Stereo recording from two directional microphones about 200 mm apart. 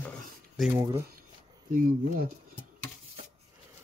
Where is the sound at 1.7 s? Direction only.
45° right (ahead or behind).